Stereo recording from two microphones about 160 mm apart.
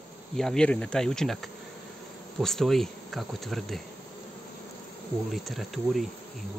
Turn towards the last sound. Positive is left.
turn(degrees=0)  # may be behind; listen again after turning